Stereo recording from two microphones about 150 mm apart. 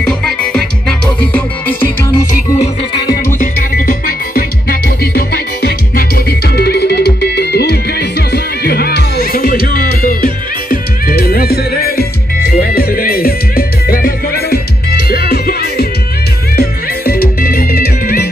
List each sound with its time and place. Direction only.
0.0 s music: 5° left (ahead or behind)
3.3 s music: 75° left (ahead or behind)